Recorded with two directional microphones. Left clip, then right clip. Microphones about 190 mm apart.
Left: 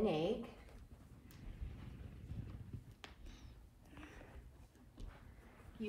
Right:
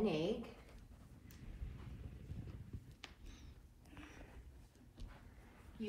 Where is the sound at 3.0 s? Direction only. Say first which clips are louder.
Right 1 dB; 15° left (ahead or behind).